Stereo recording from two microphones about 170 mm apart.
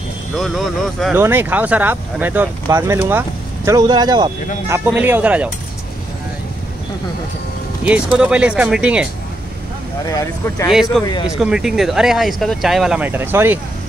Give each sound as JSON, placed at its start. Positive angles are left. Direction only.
{"t": 0.4, "sound": "speech", "side_deg": 0}
{"t": 1.1, "sound": "speech", "side_deg": -15}
{"t": 4.6, "sound": "speech", "side_deg": -10}
{"t": 7.8, "sound": "speech", "side_deg": -5}
{"t": 10.0, "sound": "speech", "side_deg": 20}
{"t": 10.7, "sound": "speech", "side_deg": 0}